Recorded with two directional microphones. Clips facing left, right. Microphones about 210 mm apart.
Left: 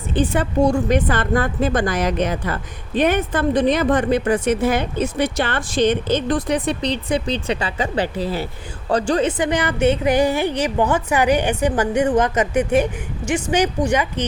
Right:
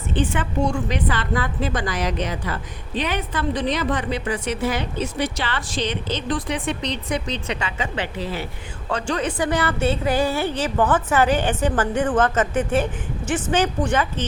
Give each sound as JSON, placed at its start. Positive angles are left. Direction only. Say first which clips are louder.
{"t": 0.1, "sound": "a woman's voice", "louder": "left 4 dB", "side_deg": 40}
{"t": 9.4, "sound": "a woman's voice", "louder": "left 3 dB", "side_deg": 15}